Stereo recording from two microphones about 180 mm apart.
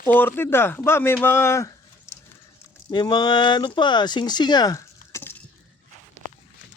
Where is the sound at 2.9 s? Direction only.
25° left (ahead or behind).